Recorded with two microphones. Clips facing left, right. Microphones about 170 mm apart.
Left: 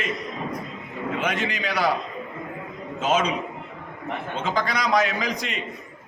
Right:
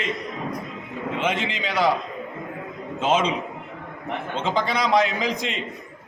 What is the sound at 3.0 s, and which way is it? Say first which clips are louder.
Speech: right 1 dB; 25° right (ahead or behind).